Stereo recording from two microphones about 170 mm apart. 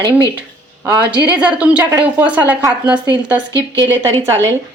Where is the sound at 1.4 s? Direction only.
5° right (ahead or behind).